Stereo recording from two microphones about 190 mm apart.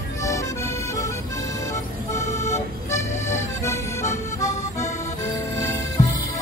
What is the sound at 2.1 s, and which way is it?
Music, 15° left (ahead or behind).